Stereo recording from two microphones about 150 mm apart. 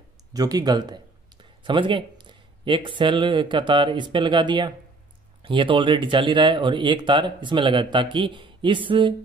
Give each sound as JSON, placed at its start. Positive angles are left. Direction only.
{"t": 0.3, "sound": "speech", "side_deg": -25}